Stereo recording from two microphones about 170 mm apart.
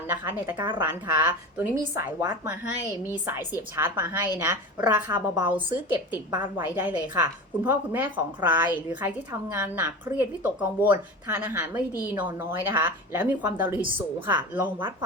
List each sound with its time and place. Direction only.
0.1 s a woman's voice: 10° right (ahead or behind)
0.5 s a woman's voice: 25° right (ahead or behind)
0.8 s a woman's voice: 15° right (ahead or behind)